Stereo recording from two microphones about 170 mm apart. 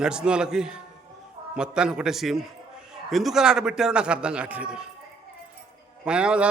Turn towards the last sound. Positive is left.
turn(degrees=-5)  # may be behind; listen again after turning